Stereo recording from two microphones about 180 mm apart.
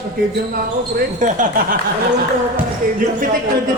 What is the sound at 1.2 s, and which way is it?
Speech, 45° right (ahead or behind).